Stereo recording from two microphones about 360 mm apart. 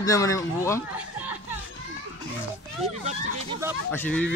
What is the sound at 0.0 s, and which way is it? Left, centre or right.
Speech, centre.